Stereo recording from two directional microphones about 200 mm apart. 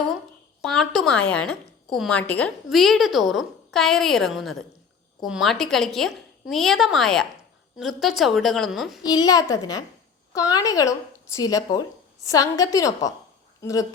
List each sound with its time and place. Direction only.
0.6 s a woman's voice: centre (ahead or behind)
9.0 s a woman's voice: 20° left (ahead or behind)